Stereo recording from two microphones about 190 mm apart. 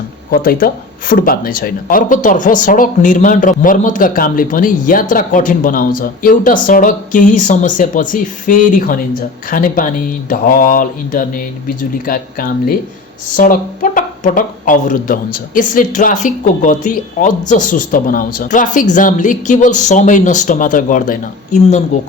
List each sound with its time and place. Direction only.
0.3 s speech: 50° left (ahead or behind)